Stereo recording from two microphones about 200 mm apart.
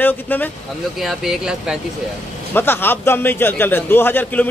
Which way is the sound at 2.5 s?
10° left (ahead or behind).